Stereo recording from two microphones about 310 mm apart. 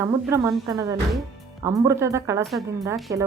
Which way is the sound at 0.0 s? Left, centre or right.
Centre.